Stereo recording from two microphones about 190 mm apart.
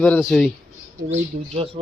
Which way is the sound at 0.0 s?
Centre (ahead or behind).